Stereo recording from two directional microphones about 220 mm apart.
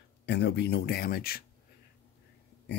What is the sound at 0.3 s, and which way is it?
Speech, 50° left (ahead or behind).